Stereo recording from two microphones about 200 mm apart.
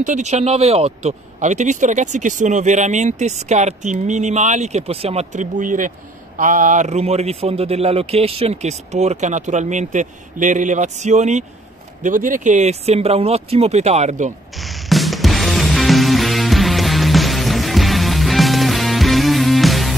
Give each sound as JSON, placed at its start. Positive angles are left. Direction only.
{"t": 0.0, "sound": "speech", "side_deg": -35}
{"t": 14.6, "sound": "music", "side_deg": 0}